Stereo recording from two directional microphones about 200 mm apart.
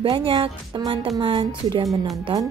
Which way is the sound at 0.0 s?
25° right (ahead or behind).